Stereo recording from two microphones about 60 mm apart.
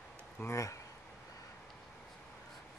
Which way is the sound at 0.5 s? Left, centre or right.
Left.